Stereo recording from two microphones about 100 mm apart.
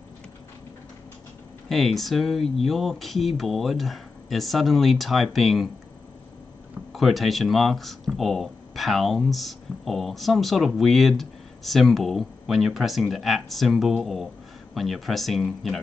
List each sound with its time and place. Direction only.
1.7 s speech: centre (ahead or behind)
6.9 s speech: centre (ahead or behind)